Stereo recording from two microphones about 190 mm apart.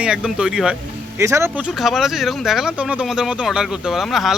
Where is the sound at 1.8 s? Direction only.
Centre (ahead or behind).